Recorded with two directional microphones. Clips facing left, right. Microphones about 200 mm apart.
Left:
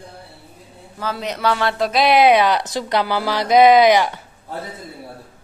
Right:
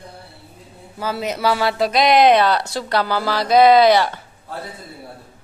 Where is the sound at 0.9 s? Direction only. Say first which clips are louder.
Right 2 dB; 10° right (ahead or behind); by 4.6 s 15° left (ahead or behind).